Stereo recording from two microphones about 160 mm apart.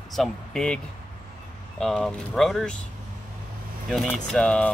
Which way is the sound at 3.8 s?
Centre (ahead or behind).